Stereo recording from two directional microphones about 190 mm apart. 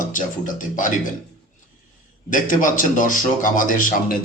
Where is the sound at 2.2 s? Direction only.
45° left (ahead or behind).